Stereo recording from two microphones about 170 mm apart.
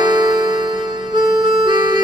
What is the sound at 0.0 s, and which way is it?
Music, 25° right (ahead or behind).